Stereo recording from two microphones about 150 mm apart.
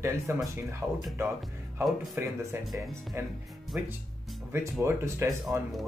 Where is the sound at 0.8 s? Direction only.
Centre (ahead or behind).